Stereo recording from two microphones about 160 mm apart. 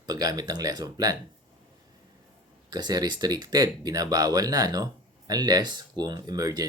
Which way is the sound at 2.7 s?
25° right (ahead or behind).